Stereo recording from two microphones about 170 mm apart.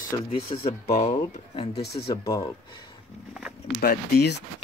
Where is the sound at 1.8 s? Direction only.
70° left (ahead or behind).